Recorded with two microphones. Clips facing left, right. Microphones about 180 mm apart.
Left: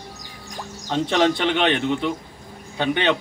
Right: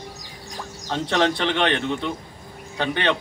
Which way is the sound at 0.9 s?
15° left (ahead or behind).